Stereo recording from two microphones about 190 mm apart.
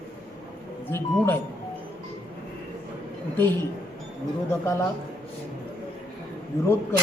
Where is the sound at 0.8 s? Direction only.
10° left (ahead or behind).